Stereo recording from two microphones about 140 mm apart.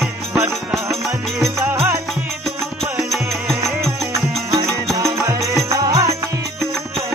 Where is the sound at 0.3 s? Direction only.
10° right (ahead or behind).